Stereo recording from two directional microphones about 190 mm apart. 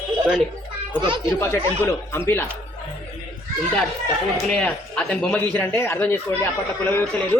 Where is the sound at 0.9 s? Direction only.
25° right (ahead or behind).